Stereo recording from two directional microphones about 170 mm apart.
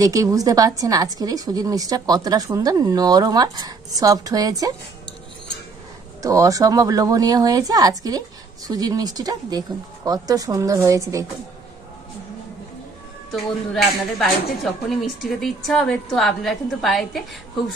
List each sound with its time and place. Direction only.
0.0 s a woman's voice: 20° right (ahead or behind)
6.2 s a woman's voice: 20° right (ahead or behind)
13.3 s a woman's voice: centre (ahead or behind)